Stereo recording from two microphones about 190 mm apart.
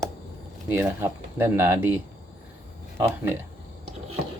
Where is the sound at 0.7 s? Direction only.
10° right (ahead or behind).